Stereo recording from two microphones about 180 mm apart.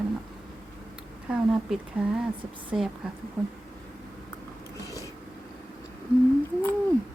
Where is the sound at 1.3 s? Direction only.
5° right (ahead or behind).